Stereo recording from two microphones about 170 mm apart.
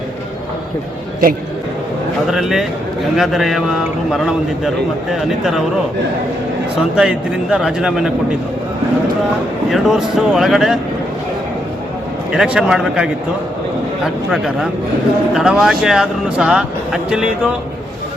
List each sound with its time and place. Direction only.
2.3 s speech: centre (ahead or behind)
6.9 s speech: 5° right (ahead or behind)
9.6 s speech: centre (ahead or behind)
12.3 s speech: 5° right (ahead or behind)